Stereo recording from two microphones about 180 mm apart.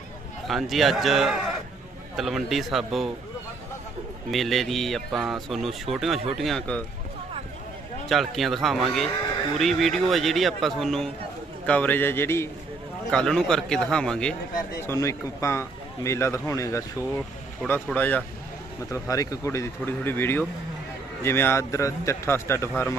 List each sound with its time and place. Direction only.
0.4 s speech: centre (ahead or behind)
4.3 s speech: centre (ahead or behind)
8.1 s speech: centre (ahead or behind)
14.8 s speech: 15° left (ahead or behind)
17.6 s speech: 5° left (ahead or behind)